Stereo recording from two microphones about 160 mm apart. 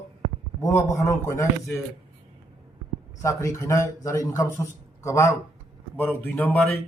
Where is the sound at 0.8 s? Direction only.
20° left (ahead or behind).